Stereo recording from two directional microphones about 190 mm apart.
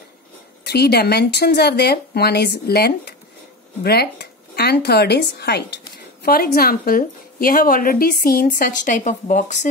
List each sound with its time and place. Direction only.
0.7 s a woman's voice: 55° left (ahead or behind); by 9.7 s 40° left (ahead or behind)